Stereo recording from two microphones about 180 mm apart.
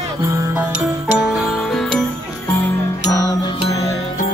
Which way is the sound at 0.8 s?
Centre (ahead or behind).